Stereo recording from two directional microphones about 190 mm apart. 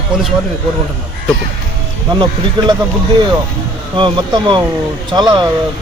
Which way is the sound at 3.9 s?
25° right (ahead or behind).